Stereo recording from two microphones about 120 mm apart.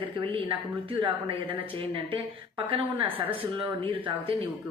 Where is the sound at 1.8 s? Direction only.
50° right (ahead or behind).